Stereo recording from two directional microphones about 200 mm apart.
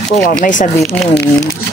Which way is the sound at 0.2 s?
45° left (ahead or behind).